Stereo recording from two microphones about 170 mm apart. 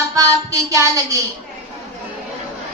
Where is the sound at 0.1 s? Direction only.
20° right (ahead or behind).